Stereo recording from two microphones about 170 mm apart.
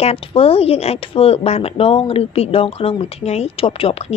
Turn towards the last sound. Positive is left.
turn(degrees=35)  # may be behind; listen again after turning